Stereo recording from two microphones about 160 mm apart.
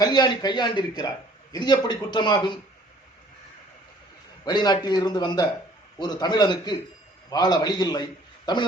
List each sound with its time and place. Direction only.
0.0 s a man's voice: 25° left (ahead or behind)
4.4 s a man's voice: 25° left (ahead or behind)